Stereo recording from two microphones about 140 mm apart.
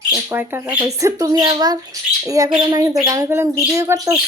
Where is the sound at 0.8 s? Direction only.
25° right (ahead or behind).